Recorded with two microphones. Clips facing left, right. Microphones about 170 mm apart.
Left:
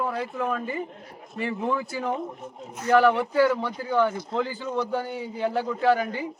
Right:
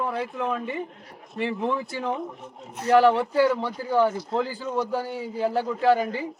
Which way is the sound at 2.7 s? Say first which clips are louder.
Right 1 dB; 30° right (ahead or behind).